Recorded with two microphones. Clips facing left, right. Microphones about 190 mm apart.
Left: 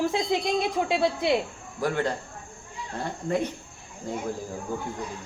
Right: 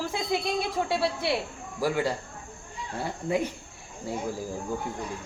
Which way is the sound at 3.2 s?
10° right (ahead or behind).